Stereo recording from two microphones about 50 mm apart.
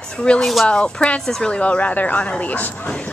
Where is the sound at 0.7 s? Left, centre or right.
Left.